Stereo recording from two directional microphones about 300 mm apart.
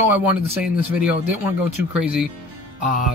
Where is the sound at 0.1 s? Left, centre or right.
Centre.